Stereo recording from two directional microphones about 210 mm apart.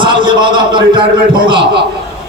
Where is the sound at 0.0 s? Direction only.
20° right (ahead or behind).